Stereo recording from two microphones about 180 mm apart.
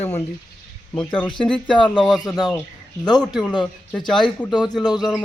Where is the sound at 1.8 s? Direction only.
5° left (ahead or behind).